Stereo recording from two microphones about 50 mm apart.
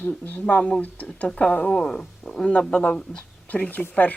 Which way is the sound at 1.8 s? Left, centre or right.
Centre.